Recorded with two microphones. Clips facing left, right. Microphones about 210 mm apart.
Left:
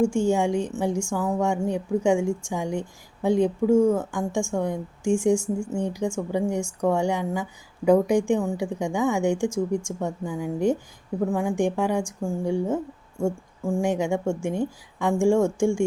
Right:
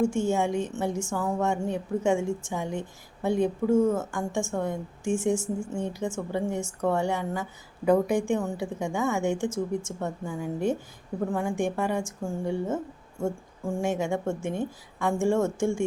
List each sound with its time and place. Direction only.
0.0 s speech: 15° left (ahead or behind)